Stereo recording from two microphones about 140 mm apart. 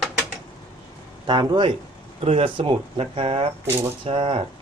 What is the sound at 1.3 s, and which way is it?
Speech, 30° right (ahead or behind).